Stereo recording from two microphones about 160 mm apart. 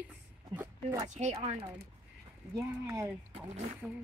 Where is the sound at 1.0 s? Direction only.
45° right (ahead or behind).